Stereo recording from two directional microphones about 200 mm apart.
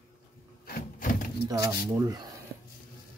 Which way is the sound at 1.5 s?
15° right (ahead or behind).